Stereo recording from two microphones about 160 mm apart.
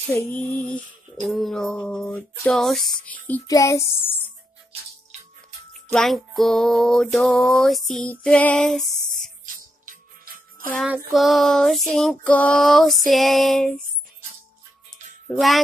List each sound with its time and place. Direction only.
0.3 s female singing: 5° left (ahead or behind)
1.2 s music: centre (ahead or behind)
3.4 s speech: 20° left (ahead or behind)
5.9 s music: centre (ahead or behind)
9.8 s music: 60° right (ahead or behind)
11.1 s music: centre (ahead or behind)
15.2 s music: centre (ahead or behind)